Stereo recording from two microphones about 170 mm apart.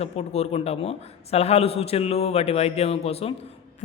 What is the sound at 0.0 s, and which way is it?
A man's voice, 40° left (ahead or behind).